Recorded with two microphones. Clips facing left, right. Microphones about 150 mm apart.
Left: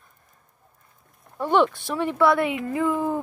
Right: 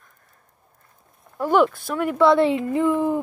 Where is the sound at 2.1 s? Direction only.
20° right (ahead or behind).